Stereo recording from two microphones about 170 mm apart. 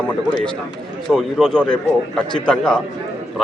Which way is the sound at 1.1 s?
5° left (ahead or behind).